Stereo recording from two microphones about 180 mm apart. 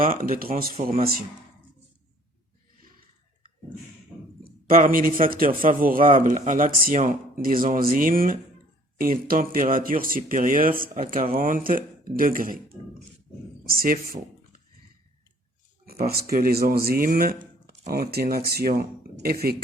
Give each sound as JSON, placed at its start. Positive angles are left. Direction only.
{"t": 0.0, "sound": "speech", "side_deg": -50}
{"t": 4.4, "sound": "a man's voice", "side_deg": -50}
{"t": 13.7, "sound": "speech", "side_deg": -55}
{"t": 15.9, "sound": "speech", "side_deg": -55}